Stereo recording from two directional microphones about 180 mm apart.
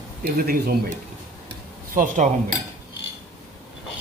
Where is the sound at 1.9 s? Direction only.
50° right (ahead or behind).